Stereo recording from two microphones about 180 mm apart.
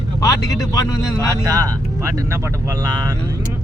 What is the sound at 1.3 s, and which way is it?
Speech, 20° right (ahead or behind).